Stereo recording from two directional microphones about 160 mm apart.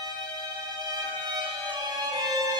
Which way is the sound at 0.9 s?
25° right (ahead or behind).